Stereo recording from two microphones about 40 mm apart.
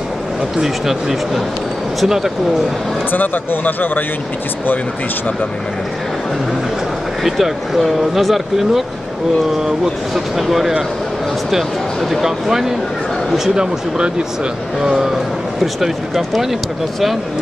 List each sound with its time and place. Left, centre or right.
0.6 s speech: centre
3.1 s speech: left
7.2 s speech: centre
10.1 s speech: centre
13.6 s speech: right
14.8 s speech: centre